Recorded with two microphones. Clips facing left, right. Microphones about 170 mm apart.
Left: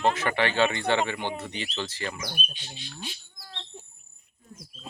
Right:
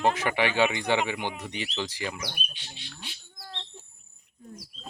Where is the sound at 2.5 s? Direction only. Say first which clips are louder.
Left 3 dB; 65° right (ahead or behind).